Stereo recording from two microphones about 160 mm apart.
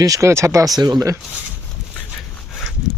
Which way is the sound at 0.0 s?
20° right (ahead or behind).